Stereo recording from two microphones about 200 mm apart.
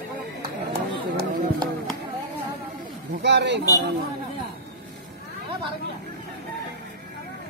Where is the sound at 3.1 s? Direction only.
60° right (ahead or behind).